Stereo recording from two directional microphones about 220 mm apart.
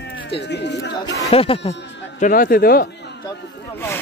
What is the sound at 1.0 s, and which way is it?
Speech, 15° left (ahead or behind).